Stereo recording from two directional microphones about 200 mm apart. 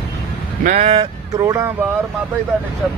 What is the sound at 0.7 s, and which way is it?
Speech, 30° right (ahead or behind).